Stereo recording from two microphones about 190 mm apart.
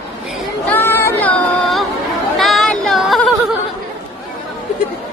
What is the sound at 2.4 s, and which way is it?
Yodeling, centre (ahead or behind).